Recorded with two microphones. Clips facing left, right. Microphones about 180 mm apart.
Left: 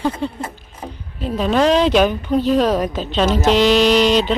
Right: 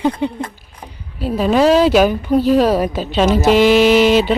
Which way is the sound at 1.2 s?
5° right (ahead or behind).